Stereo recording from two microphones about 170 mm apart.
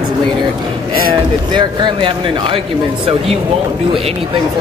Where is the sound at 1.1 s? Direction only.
25° right (ahead or behind).